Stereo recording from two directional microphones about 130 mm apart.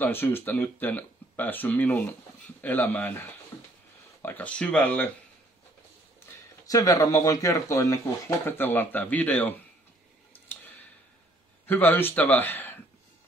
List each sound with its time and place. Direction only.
0.0 s speech: 15° left (ahead or behind)
6.1 s speech: 25° left (ahead or behind)
10.3 s a sound: 15° left (ahead or behind)
11.6 s speech: 15° left (ahead or behind)